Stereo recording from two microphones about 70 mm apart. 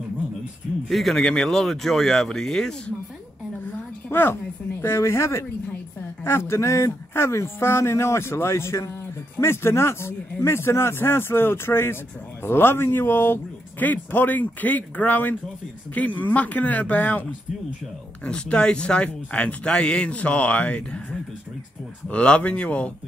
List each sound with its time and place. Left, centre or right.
0.8 s speech: centre
4.1 s a man's voice: left; by 21.0 s centre
22.1 s speech: centre